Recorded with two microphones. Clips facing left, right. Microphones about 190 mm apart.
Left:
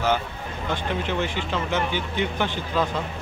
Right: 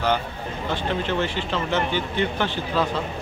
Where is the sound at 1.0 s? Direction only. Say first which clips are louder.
Right 2 dB; 10° left (ahead or behind).